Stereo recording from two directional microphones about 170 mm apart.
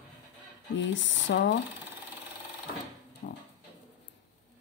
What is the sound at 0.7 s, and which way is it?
Speech, 90° left.